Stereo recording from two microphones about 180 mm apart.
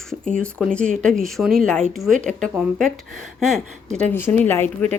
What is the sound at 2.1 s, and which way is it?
Speech, 45° right (ahead or behind).